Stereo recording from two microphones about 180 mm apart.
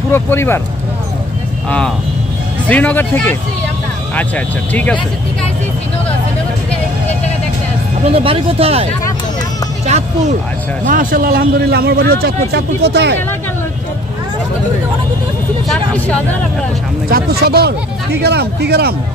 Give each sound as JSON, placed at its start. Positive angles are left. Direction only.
{"t": 0.1, "sound": "speech", "side_deg": 10}
{"t": 2.7, "sound": "speech", "side_deg": 10}
{"t": 8.1, "sound": "speech", "side_deg": -30}
{"t": 9.8, "sound": "speech", "side_deg": -40}
{"t": 10.9, "sound": "a man's voice", "side_deg": -50}
{"t": 12.5, "sound": "speech", "side_deg": -70}
{"t": 15.7, "sound": "speech", "side_deg": 5}
{"t": 17.1, "sound": "a man's voice", "side_deg": -60}